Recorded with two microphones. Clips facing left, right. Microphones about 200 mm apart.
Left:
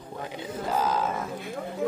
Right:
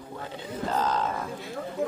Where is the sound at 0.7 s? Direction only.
10° left (ahead or behind).